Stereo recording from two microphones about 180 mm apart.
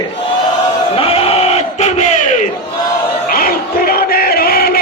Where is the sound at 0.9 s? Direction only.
30° left (ahead or behind).